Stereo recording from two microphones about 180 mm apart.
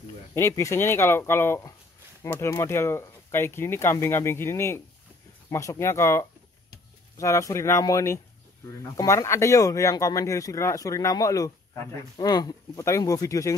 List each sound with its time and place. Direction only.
0.3 s speech: 15° left (ahead or behind)